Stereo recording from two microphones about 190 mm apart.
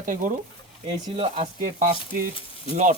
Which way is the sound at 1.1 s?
30° right (ahead or behind).